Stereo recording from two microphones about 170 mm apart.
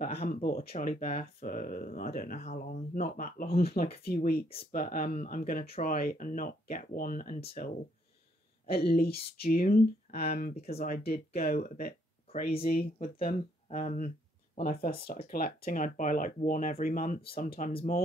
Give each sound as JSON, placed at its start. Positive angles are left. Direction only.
{"t": 0.3, "sound": "speech", "side_deg": 60}
{"t": 12.3, "sound": "speech", "side_deg": 35}
{"t": 12.6, "sound": "speech", "side_deg": 55}